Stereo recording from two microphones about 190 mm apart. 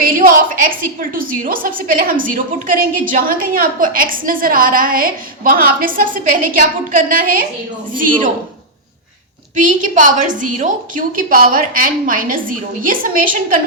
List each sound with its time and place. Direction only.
0.0 s a woman's voice: 45° right (ahead or behind)
9.6 s a woman's voice: 45° right (ahead or behind)